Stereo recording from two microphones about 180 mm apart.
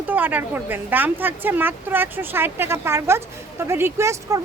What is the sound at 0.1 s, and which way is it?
Speech, 10° right (ahead or behind).